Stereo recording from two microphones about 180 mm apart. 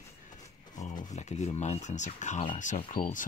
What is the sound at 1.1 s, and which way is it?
Speech, 40° left (ahead or behind).